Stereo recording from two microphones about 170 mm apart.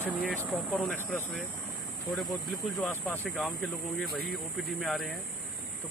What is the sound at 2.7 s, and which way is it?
Speech, centre (ahead or behind).